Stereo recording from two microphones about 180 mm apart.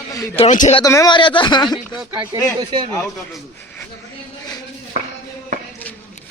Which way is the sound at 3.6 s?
10° left (ahead or behind).